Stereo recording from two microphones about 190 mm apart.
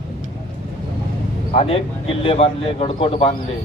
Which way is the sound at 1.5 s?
30° left (ahead or behind).